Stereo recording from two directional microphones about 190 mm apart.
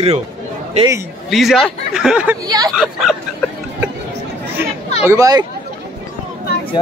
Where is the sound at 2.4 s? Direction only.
20° right (ahead or behind).